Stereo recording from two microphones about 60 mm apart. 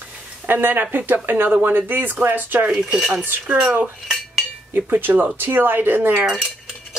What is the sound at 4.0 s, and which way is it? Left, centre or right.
Cutlery, centre.